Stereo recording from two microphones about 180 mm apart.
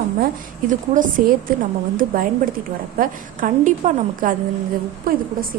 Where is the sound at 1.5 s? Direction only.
50° right (ahead or behind).